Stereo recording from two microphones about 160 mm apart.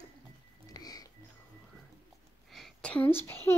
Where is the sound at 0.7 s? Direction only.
25° left (ahead or behind).